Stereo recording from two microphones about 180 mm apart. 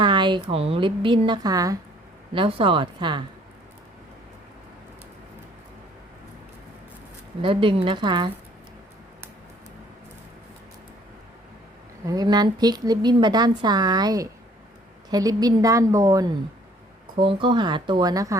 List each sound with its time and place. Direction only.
0.0 s a woman's voice: 25° right (ahead or behind)
7.4 s a woman's voice: 30° right (ahead or behind)
12.0 s a woman's voice: 20° right (ahead or behind)